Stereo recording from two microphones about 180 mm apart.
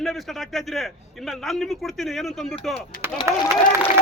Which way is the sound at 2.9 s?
55° left (ahead or behind).